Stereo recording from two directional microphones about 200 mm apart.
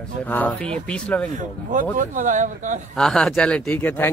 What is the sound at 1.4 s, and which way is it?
Speech, 40° right (ahead or behind).